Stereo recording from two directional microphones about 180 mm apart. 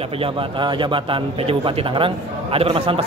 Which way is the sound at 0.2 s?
30° right (ahead or behind).